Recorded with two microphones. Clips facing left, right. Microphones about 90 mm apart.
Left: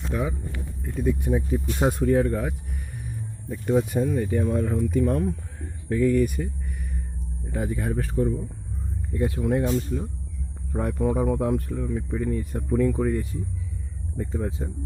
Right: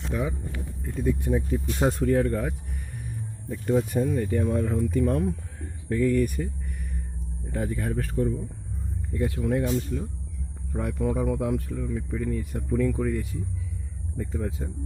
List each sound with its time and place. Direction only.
0.1 s speech: 10° left (ahead or behind); by 9.7 s 25° left (ahead or behind)
10.7 s speech: 40° left (ahead or behind)